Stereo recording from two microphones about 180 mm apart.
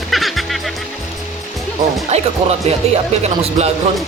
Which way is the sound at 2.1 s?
35° right (ahead or behind).